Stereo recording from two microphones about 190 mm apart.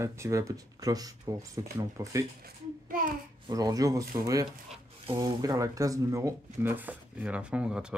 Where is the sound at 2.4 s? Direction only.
45° right (ahead or behind).